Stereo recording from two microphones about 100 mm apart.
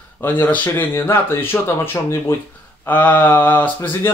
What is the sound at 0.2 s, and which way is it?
A man's voice, 20° left (ahead or behind).